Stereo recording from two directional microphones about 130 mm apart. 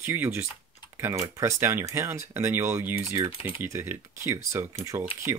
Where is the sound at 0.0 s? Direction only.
15° right (ahead or behind).